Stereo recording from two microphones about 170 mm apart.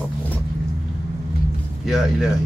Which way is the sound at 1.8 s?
Centre (ahead or behind).